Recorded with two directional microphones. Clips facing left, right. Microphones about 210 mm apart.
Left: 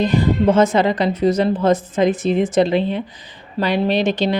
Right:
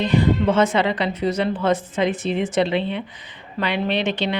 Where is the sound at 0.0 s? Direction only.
40° left (ahead or behind).